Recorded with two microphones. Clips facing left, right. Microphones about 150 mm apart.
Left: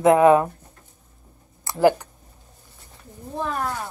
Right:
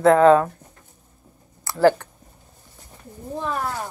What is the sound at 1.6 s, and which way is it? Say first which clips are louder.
Speech: right 1 dB; 15° left (ahead or behind).